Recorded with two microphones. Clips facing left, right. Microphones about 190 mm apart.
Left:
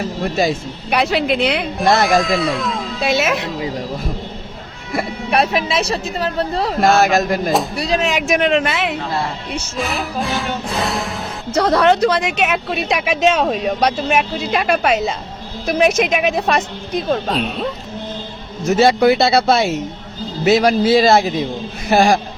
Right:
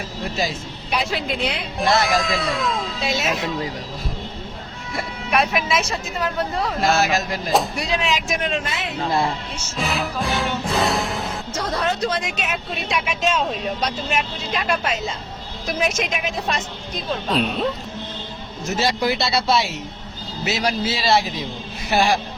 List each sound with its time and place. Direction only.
0.3 s speech: 55° left (ahead or behind)
1.8 s speech: 50° left (ahead or behind)
2.0 s music: centre (ahead or behind)
3.0 s speech: 70° left (ahead or behind)
5.3 s a woman's voice: 35° left (ahead or behind)
6.8 s speech: 50° left (ahead or behind)
7.8 s a woman's voice: 40° left (ahead or behind)
8.1 s speech: 70° left (ahead or behind)
9.7 s music: centre (ahead or behind)
11.5 s speech: 70° left (ahead or behind)
17.3 s music: centre (ahead or behind)
18.8 s speech: 60° left (ahead or behind)